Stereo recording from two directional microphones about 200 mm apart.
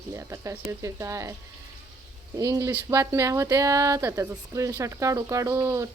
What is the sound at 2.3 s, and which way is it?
Speech, 15° right (ahead or behind).